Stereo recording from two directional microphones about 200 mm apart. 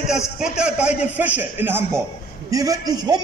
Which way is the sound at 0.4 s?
5° right (ahead or behind).